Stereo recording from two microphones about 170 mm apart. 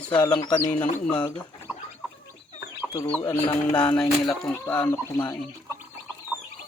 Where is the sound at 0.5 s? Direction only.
10° left (ahead or behind).